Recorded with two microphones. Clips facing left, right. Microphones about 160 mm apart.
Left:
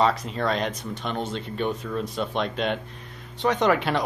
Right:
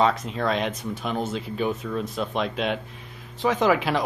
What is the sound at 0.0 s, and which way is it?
Speech, centre (ahead or behind).